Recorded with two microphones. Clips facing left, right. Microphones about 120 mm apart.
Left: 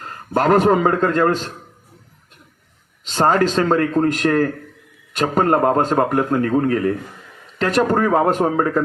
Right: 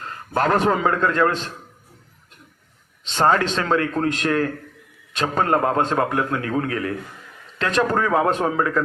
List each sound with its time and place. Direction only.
0.0 s a man's voice: 30° left (ahead or behind)
3.1 s a man's voice: 40° left (ahead or behind)